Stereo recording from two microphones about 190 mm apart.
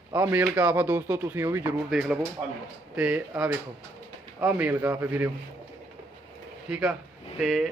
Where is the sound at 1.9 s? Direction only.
Centre (ahead or behind).